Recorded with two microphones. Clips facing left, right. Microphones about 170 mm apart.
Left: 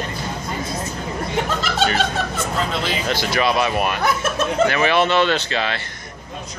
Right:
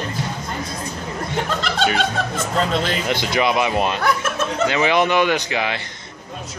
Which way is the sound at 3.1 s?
20° right (ahead or behind).